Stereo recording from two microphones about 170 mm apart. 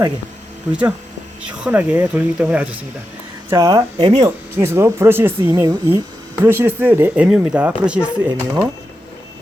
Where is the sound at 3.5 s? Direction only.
20° right (ahead or behind).